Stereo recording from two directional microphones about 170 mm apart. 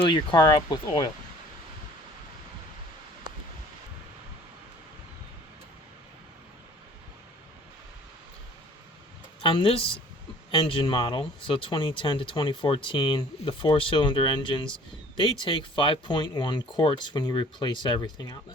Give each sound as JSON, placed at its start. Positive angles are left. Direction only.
{"t": 0.3, "sound": "speech", "side_deg": 25}
{"t": 9.4, "sound": "speech", "side_deg": 30}